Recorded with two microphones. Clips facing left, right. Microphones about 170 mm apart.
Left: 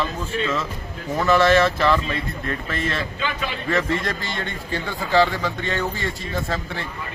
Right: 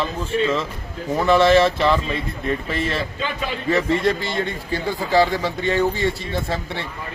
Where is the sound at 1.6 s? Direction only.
Centre (ahead or behind).